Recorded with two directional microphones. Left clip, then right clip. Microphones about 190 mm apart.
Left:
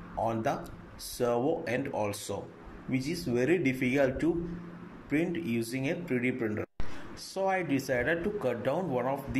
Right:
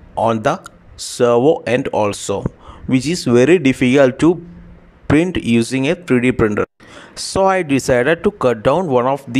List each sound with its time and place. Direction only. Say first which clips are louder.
0.2 s a man's voice: right 15 dB; 50° right (ahead or behind)